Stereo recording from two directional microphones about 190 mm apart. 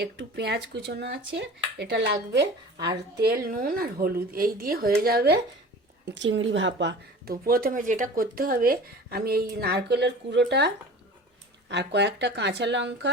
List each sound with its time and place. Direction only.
0.0 s speech: 60° right (ahead or behind)
3.2 s speech: 50° right (ahead or behind)
6.1 s speech: 70° right (ahead or behind)
11.7 s speech: 65° right (ahead or behind)